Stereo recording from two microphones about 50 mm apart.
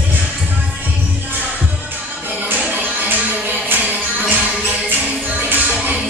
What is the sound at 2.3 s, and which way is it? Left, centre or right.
Music, right.